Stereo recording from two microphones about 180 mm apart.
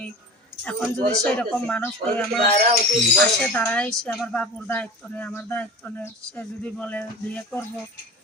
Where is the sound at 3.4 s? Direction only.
5° left (ahead or behind).